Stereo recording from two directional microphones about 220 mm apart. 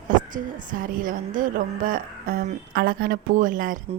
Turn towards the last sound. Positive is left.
turn(degrees=-35)  # may be behind; listen again after turning